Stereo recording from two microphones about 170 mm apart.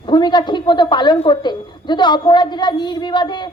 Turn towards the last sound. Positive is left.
turn(degrees=25)  # may be behind; listen again after turning